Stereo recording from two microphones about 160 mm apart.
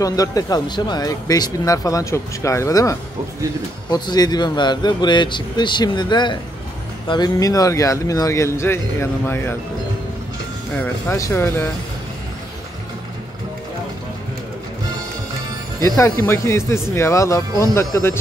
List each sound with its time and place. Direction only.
0.0 s speech: 20° left (ahead or behind)
10.7 s speech: 15° left (ahead or behind)
16.0 s speech: 15° left (ahead or behind)